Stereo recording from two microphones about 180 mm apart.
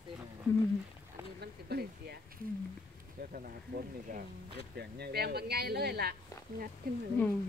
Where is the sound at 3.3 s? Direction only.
50° right (ahead or behind).